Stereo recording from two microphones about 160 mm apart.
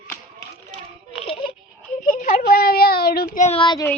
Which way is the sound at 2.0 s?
60° left (ahead or behind).